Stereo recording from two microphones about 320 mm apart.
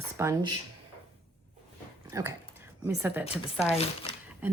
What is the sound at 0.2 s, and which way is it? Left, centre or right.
Speech, centre.